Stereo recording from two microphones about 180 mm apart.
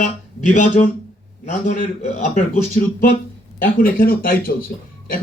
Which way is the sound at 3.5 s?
50° left (ahead or behind).